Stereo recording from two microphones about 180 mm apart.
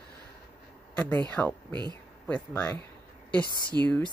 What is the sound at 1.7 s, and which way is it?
Speech, 25° right (ahead or behind).